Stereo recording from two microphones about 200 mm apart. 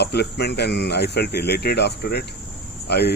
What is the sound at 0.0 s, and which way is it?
Speech, 55° left (ahead or behind).